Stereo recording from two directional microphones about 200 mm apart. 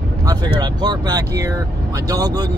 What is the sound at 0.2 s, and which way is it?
Speech, 20° right (ahead or behind).